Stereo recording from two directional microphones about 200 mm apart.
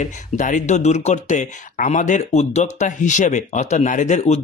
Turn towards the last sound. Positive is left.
turn(degrees=35)  # may be behind; listen again after turning